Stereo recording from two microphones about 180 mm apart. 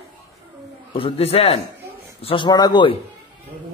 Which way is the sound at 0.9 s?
35° left (ahead or behind).